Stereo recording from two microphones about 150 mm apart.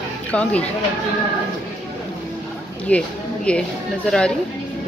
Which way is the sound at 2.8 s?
10° left (ahead or behind).